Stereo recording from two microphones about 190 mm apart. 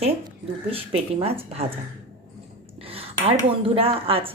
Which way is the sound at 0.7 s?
30° right (ahead or behind).